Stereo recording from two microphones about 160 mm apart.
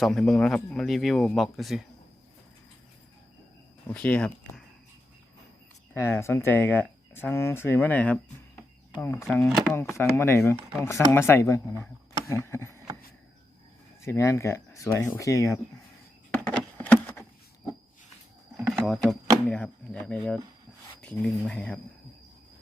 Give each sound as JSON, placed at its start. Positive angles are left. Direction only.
{"t": 0.0, "sound": "speech", "side_deg": 5}
{"t": 3.8, "sound": "speech", "side_deg": 10}
{"t": 5.9, "sound": "speech", "side_deg": 15}
{"t": 9.5, "sound": "speech", "side_deg": 0}
{"t": 9.7, "sound": "speech", "side_deg": 15}
{"t": 14.0, "sound": "speech", "side_deg": 15}
{"t": 16.3, "sound": "a sound", "side_deg": 10}
{"t": 18.7, "sound": "speech", "side_deg": 0}